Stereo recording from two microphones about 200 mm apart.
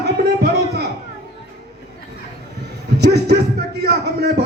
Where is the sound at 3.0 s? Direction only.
55° right (ahead or behind).